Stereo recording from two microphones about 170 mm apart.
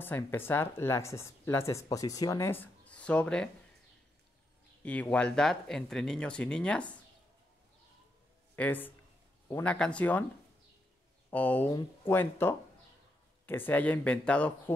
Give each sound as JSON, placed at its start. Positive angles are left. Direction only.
{"t": 0.0, "sound": "speech", "side_deg": 10}
{"t": 4.8, "sound": "speech", "side_deg": 10}
{"t": 8.5, "sound": "speech", "side_deg": 10}
{"t": 11.2, "sound": "speech", "side_deg": 10}